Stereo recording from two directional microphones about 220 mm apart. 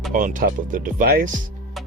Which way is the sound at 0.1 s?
35° right (ahead or behind).